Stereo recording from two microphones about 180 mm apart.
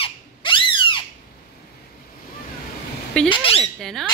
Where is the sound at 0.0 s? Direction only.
30° left (ahead or behind).